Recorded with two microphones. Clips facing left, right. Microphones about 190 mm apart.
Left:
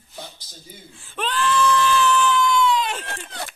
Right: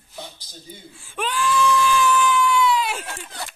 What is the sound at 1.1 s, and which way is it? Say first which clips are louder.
Screaming: even; 10° right (ahead or behind).